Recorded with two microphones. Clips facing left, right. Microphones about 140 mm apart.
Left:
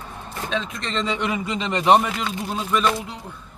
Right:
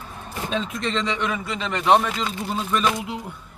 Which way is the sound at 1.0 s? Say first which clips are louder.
Left 1 dB; 10° left (ahead or behind).